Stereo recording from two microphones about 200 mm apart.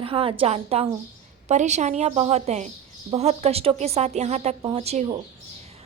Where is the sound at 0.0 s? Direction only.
25° right (ahead or behind).